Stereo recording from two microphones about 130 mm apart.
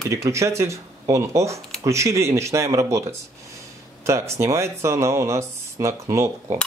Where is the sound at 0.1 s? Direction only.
25° right (ahead or behind).